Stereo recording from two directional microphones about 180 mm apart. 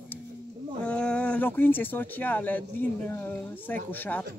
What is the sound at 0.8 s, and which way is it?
Speech, 5° left (ahead or behind).